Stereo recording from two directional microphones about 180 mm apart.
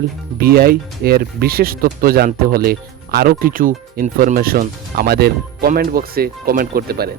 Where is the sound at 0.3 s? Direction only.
60° right (ahead or behind).